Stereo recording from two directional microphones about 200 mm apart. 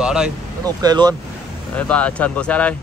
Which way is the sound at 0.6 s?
20° right (ahead or behind).